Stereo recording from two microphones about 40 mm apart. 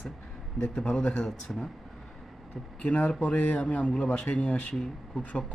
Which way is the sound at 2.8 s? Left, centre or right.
Left.